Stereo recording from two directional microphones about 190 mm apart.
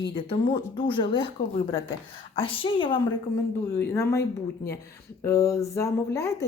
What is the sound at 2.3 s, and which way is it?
Speech, 25° left (ahead or behind).